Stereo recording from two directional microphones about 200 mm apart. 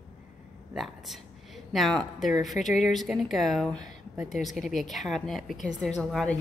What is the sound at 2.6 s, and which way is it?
Speech, 35° left (ahead or behind).